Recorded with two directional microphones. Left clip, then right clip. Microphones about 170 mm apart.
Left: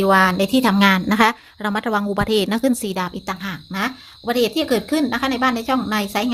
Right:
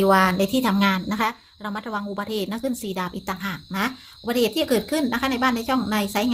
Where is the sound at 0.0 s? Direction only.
20° left (ahead or behind).